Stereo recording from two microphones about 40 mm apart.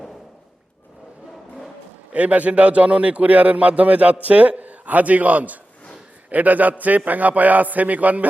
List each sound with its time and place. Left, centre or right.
2.1 s a man's voice: right